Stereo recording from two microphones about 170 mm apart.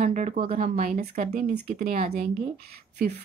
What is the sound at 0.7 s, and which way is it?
A woman's voice, 60° right (ahead or behind).